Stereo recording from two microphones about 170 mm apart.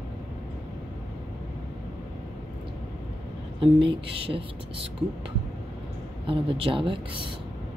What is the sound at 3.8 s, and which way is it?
Speech, 30° right (ahead or behind).